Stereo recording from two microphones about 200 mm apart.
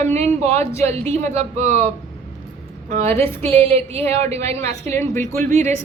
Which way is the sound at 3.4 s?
30° right (ahead or behind).